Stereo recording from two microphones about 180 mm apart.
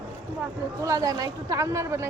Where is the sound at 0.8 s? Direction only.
20° right (ahead or behind).